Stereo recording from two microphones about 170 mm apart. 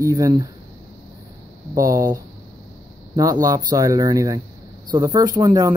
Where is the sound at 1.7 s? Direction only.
20° right (ahead or behind).